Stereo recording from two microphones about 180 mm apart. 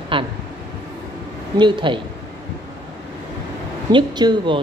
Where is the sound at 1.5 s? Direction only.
25° right (ahead or behind).